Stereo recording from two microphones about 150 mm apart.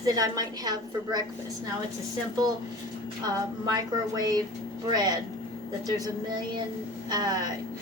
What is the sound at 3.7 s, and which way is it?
Speech, 25° right (ahead or behind).